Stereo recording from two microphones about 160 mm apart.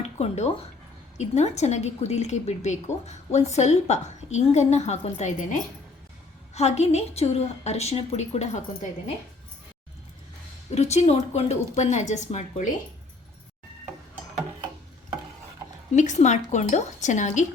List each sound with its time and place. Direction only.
0.0 s a woman's voice: 45° left (ahead or behind)
10.7 s a woman's voice: 45° left (ahead or behind)
16.0 s a woman's voice: 45° left (ahead or behind)